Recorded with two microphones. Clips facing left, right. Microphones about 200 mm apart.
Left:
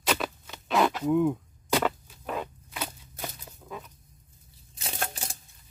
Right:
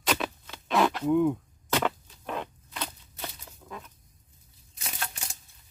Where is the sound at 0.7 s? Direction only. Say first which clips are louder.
Even; centre (ahead or behind).